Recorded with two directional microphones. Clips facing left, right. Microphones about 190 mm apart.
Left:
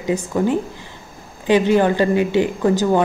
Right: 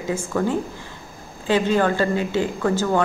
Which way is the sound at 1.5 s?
15° left (ahead or behind).